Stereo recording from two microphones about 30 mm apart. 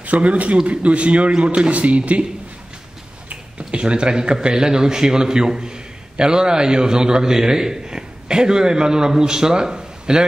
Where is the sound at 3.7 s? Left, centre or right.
Right.